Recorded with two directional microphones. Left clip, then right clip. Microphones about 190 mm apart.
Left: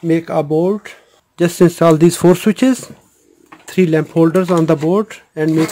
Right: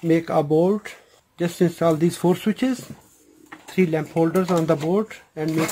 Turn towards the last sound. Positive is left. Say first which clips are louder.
# left 10 dB
turn(degrees=55)  # may be behind; listen again after turning